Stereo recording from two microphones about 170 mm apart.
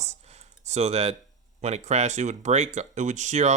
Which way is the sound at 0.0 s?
40° right (ahead or behind).